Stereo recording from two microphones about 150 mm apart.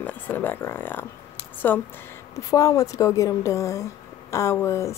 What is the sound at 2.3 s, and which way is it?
Speech, 25° left (ahead or behind).